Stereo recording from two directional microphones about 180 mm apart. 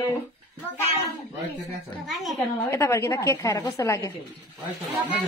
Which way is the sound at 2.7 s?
15° left (ahead or behind).